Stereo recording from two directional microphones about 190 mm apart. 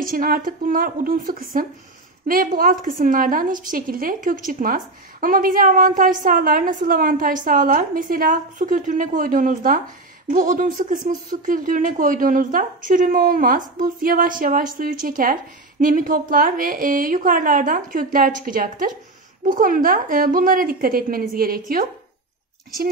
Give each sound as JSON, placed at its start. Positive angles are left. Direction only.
{"t": 0.0, "sound": "a woman's voice", "side_deg": -50}